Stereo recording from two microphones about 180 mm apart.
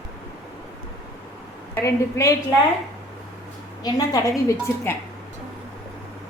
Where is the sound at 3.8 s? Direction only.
20° left (ahead or behind).